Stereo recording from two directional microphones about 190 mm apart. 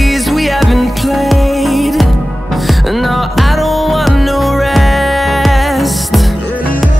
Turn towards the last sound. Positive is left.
turn(degrees=0)  # may be behind; listen again after turning